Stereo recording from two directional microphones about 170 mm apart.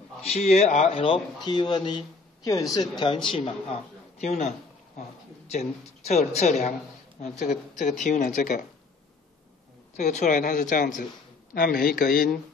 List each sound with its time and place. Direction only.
0.2 s a man's voice: 40° left (ahead or behind)
9.9 s a woman's voice: 45° left (ahead or behind)